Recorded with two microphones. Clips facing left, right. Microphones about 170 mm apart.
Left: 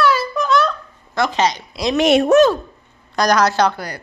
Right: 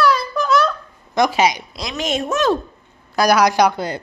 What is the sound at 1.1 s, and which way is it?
Speech, 15° right (ahead or behind).